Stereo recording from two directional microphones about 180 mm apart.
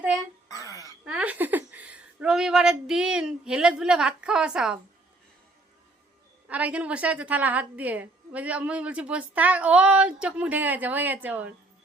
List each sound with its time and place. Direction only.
0.6 s wail: 20° left (ahead or behind)
1.0 s speech: 5° right (ahead or behind)
6.5 s a woman's voice: 10° right (ahead or behind)